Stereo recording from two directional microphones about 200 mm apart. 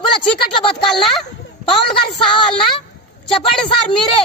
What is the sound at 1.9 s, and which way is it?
Speech, 25° left (ahead or behind).